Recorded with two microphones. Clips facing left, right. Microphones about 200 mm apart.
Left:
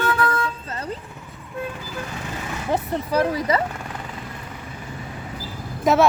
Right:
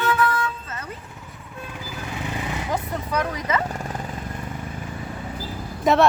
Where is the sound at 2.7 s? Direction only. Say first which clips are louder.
Left 8 dB; 30° left (ahead or behind).